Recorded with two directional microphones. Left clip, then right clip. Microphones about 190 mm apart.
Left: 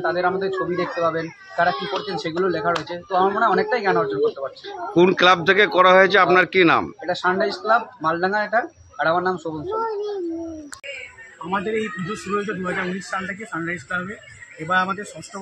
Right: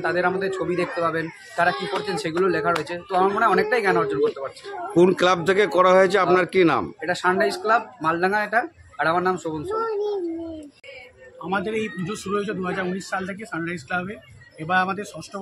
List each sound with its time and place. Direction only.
0.0 s speech: 15° right (ahead or behind)
11.5 s speech: 25° right (ahead or behind)